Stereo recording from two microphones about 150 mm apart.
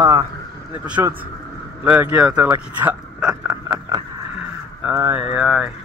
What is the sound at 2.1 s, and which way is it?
Speech, 5° right (ahead or behind).